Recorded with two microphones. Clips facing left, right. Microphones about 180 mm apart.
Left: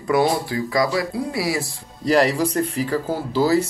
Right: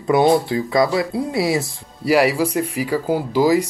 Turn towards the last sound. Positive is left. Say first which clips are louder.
# right 2 dB
turn(degrees=-15)  # may be behind; listen again after turning